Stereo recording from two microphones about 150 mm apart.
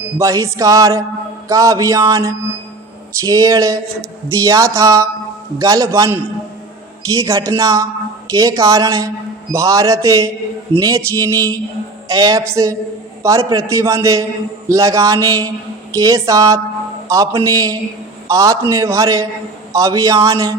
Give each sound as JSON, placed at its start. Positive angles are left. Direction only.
{"t": 0.2, "sound": "a man's voice", "side_deg": -20}